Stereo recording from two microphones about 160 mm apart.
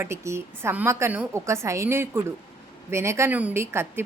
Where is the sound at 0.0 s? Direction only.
15° right (ahead or behind).